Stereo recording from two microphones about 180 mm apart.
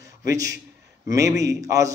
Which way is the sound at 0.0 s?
20° right (ahead or behind).